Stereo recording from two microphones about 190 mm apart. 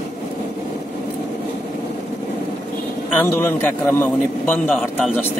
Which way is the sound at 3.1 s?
10° left (ahead or behind).